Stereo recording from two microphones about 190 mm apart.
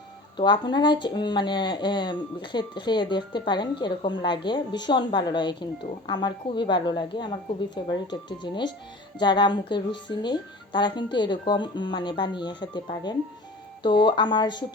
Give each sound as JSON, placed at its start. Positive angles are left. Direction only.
{"t": 0.3, "sound": "speech", "side_deg": 25}